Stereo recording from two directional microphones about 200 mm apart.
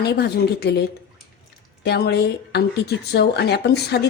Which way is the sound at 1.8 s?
55° left (ahead or behind).